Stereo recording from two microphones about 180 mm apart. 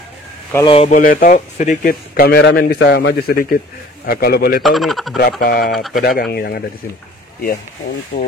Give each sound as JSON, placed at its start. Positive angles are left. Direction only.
{"t": 0.7, "sound": "speech", "side_deg": 35}
{"t": 1.0, "sound": "speech", "side_deg": 45}
{"t": 4.6, "sound": "speech", "side_deg": 0}
{"t": 5.4, "sound": "speech", "side_deg": 50}
{"t": 5.7, "sound": "speech", "side_deg": 0}
{"t": 5.9, "sound": "speech", "side_deg": 55}
{"t": 8.1, "sound": "speech", "side_deg": 45}